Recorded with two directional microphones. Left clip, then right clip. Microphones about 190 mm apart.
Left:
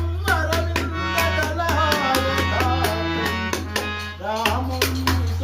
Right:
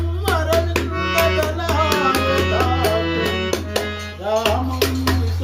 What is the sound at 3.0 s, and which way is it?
Music, 5° left (ahead or behind).